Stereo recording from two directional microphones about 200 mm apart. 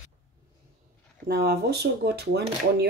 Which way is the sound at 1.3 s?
50° right (ahead or behind).